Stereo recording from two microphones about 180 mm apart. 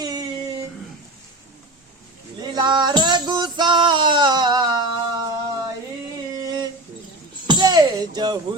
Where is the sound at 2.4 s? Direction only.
25° right (ahead or behind).